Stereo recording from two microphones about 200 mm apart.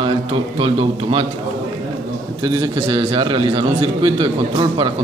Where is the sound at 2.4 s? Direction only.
20° right (ahead or behind).